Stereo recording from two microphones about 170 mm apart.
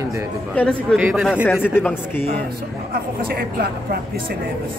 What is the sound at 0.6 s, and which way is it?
Speech, 5° left (ahead or behind).